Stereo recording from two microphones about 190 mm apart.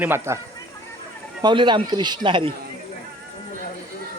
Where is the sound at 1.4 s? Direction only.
25° right (ahead or behind).